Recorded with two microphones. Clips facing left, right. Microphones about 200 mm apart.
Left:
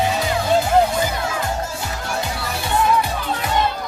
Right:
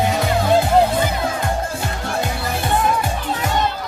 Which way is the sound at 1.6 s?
55° right (ahead or behind).